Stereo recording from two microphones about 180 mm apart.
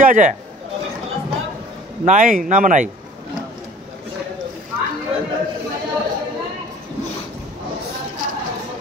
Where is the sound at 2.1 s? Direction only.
45° right (ahead or behind).